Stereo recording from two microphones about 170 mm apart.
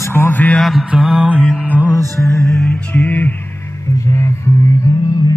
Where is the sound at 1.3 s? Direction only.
5° right (ahead or behind).